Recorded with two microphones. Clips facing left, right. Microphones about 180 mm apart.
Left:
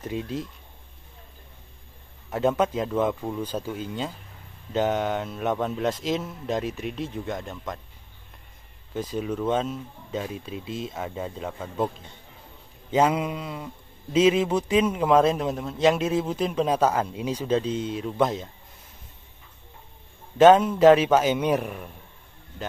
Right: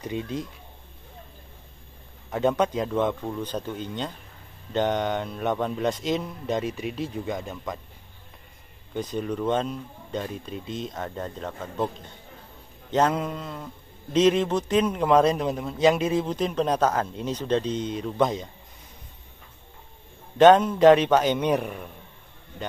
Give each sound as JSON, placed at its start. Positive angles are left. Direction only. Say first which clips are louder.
{"t": 0.0, "sound": "a man's voice", "louder": "even", "side_deg": 0}
{"t": 2.3, "sound": "a man's voice", "louder": "even", "side_deg": 0}
{"t": 8.9, "sound": "a man's voice", "louder": "even", "side_deg": 5}
{"t": 12.9, "sound": "a sound", "louder": "left 1 dB", "side_deg": 10}
{"t": 14.1, "sound": "a man's voice", "louder": "even", "side_deg": 5}
{"t": 20.3, "sound": "a man's voice", "louder": "even", "side_deg": 5}